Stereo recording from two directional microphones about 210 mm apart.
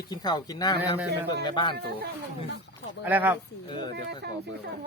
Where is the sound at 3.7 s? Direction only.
20° left (ahead or behind).